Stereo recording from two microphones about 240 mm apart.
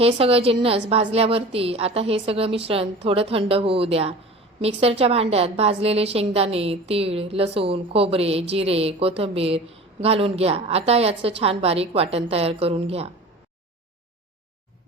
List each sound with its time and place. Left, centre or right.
0.0 s a woman's voice: right